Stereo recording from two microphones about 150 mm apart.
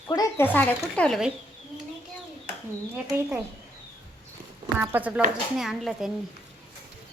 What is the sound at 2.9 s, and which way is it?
Speech, 10° right (ahead or behind).